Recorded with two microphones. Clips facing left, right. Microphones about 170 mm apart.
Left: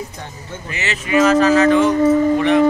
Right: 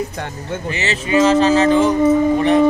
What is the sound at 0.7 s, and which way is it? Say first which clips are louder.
Speech: right 2 dB; 30° right (ahead or behind).